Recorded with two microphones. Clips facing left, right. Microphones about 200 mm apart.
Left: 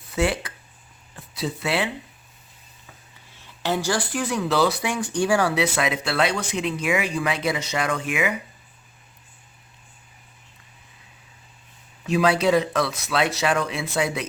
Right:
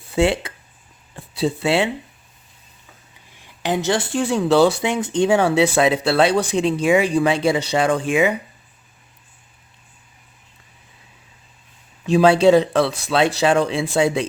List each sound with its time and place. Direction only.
0.1 s speech: 25° right (ahead or behind)
3.3 s speech: 15° right (ahead or behind)
12.0 s speech: 30° right (ahead or behind)